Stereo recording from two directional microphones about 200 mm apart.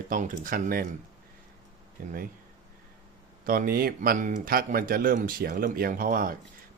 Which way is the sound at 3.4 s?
45° right (ahead or behind).